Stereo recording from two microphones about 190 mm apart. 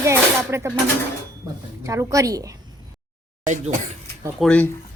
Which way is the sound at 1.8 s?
15° right (ahead or behind).